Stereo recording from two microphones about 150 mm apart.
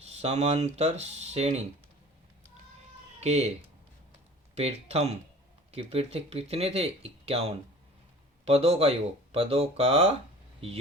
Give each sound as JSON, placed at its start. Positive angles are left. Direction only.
{"t": 0.0, "sound": "speech", "side_deg": -45}
{"t": 3.2, "sound": "speech", "side_deg": -45}
{"t": 4.5, "sound": "speech", "side_deg": -45}